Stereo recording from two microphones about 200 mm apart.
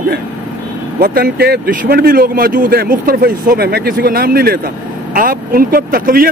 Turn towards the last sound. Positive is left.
turn(degrees=-45)  # may be behind; listen again after turning